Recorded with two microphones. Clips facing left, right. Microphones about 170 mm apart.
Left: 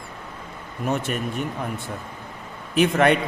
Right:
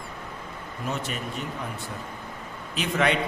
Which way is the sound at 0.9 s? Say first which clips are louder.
Left 6 dB; 55° left (ahead or behind).